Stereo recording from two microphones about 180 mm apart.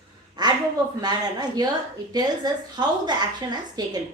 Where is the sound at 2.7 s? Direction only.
25° right (ahead or behind).